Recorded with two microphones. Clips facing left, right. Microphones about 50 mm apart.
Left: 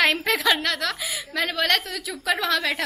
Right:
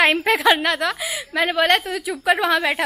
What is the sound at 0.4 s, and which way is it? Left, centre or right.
A woman's voice, right.